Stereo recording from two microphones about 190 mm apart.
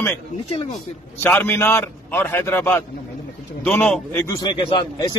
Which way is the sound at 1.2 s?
10° left (ahead or behind).